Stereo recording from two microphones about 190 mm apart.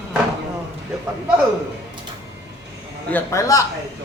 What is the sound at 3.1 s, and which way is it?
Speech, 15° left (ahead or behind).